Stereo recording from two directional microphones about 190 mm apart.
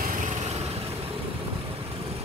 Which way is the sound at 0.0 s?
45° right (ahead or behind).